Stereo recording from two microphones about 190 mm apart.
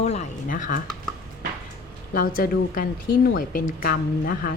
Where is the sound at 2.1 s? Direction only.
50° left (ahead or behind).